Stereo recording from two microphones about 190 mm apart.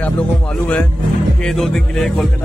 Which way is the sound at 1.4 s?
Centre (ahead or behind).